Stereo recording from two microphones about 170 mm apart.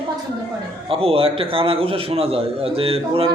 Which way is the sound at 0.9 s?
35° right (ahead or behind).